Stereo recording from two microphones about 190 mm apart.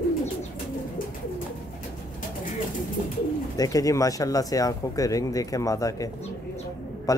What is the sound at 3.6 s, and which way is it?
Speech, 20° left (ahead or behind).